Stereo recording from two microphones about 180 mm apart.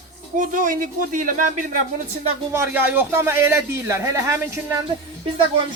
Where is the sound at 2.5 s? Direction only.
10° right (ahead or behind).